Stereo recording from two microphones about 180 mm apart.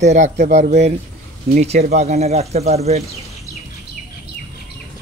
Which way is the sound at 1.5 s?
40° right (ahead or behind).